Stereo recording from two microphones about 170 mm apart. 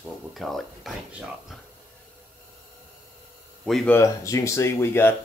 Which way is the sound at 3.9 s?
20° left (ahead or behind).